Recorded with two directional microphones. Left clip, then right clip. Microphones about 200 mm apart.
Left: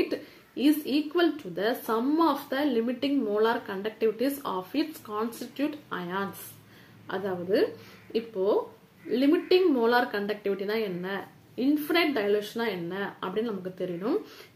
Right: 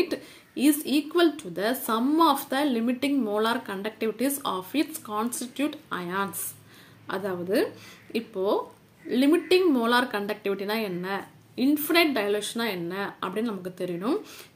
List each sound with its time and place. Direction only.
0.1 s a woman's voice: 35° right (ahead or behind)